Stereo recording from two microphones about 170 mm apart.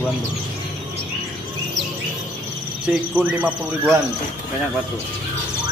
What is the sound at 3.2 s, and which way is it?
Speech, 10° right (ahead or behind).